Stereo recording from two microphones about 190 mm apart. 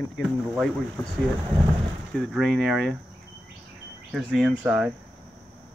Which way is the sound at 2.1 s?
Centre (ahead or behind).